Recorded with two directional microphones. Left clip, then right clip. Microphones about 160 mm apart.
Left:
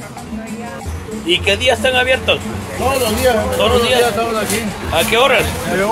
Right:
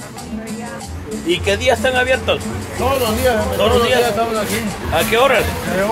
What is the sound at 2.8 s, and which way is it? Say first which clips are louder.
Speech: left 1 dB; 15° left (ahead or behind).